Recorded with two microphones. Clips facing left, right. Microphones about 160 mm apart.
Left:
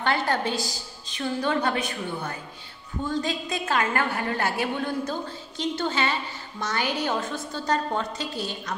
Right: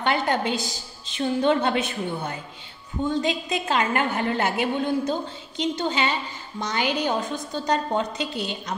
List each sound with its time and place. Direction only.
0.0 s a woman's voice: 20° right (ahead or behind)